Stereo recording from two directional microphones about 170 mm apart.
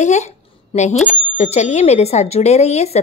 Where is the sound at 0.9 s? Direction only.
5° right (ahead or behind).